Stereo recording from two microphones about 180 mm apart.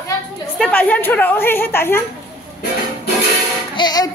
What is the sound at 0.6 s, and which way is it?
A woman's voice, 10° left (ahead or behind).